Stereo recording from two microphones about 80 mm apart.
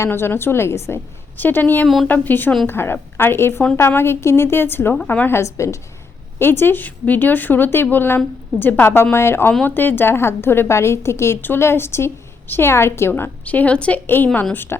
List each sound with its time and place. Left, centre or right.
0.0 s a woman's voice: left
5.4 s a woman's voice: left
6.4 s a woman's voice: left
14.5 s a woman's voice: left